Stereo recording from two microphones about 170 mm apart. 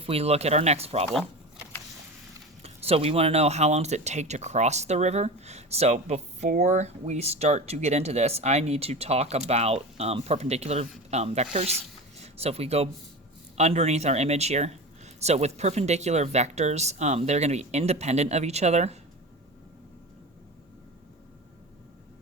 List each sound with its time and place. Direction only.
0.0 s speech: 35° right (ahead or behind)
2.6 s speech: 35° right (ahead or behind)